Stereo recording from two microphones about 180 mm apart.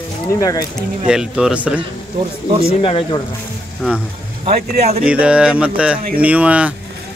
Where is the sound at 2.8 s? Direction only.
30° left (ahead or behind).